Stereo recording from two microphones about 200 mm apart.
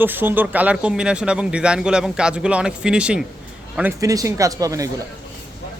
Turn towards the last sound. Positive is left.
turn(degrees=-15)  # may be behind; listen again after turning